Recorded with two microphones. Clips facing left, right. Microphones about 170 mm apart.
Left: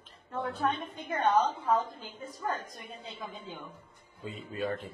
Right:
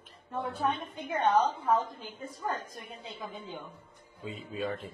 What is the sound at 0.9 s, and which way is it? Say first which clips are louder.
Speech: right 1 dB; 25° right (ahead or behind).